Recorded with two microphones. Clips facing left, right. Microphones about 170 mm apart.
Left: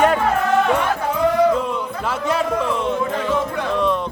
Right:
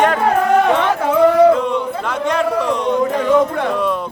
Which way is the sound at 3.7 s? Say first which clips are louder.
Left 3 dB; centre (ahead or behind).